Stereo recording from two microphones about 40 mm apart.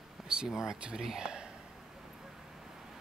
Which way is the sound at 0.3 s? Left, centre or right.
Centre.